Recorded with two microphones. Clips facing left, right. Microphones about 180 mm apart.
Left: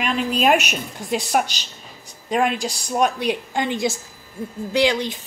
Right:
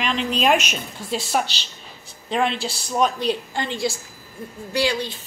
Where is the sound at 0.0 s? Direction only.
10° left (ahead or behind).